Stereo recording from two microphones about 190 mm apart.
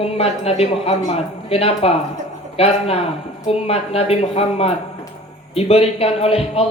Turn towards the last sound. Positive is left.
turn(degrees=30)  # may be behind; listen again after turning